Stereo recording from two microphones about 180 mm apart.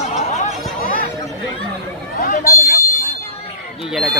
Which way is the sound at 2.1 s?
50° left (ahead or behind).